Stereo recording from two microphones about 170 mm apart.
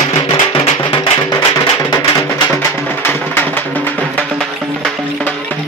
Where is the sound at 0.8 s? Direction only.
30° left (ahead or behind).